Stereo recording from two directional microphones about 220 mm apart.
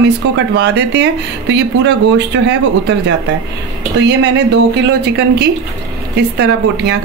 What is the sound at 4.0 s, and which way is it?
A woman's voice, 50° right (ahead or behind).